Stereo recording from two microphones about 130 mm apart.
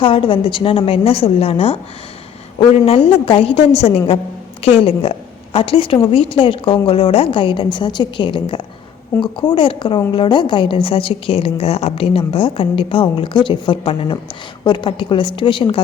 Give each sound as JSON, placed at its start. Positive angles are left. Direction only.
{"t": 0.0, "sound": "a woman's voice", "side_deg": 45}